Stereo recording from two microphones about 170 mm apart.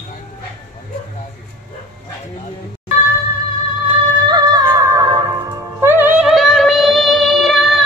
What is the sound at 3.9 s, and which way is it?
Music, 25° right (ahead or behind).